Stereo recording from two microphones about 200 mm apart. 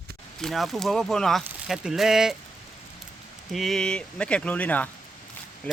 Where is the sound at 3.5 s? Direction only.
Centre (ahead or behind).